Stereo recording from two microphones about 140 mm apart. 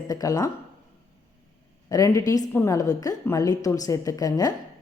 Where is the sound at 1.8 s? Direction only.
25° left (ahead or behind).